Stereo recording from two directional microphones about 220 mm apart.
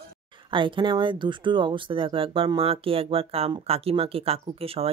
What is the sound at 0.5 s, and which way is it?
Speech, 20° right (ahead or behind).